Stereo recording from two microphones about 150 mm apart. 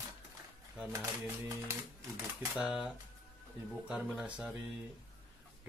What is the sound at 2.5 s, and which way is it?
Speech, 5° right (ahead or behind).